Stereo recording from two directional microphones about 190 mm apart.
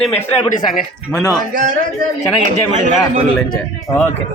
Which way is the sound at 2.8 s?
40° right (ahead or behind).